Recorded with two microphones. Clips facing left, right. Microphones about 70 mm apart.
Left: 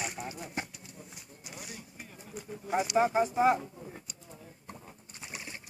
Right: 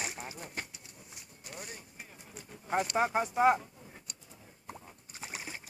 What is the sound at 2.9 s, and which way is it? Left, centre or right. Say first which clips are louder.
Speech: left 6 dB; right.